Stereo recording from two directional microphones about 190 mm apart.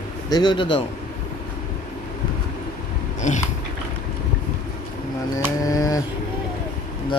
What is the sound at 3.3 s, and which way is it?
Speech, 40° left (ahead or behind).